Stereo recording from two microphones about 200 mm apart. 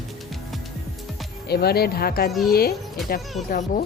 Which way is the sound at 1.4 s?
50° left (ahead or behind).